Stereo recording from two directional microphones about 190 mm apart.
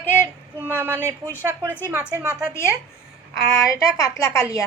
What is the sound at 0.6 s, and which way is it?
Speech, 10° right (ahead or behind).